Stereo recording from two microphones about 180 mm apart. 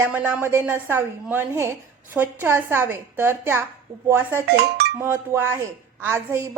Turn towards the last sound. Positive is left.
turn(degrees=-15)  # may be behind; listen again after turning